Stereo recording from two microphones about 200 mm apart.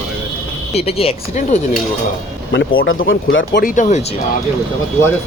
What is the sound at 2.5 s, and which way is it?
Speech, 60° left (ahead or behind).